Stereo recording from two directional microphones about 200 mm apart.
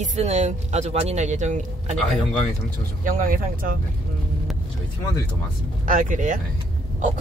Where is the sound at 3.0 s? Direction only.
45° right (ahead or behind).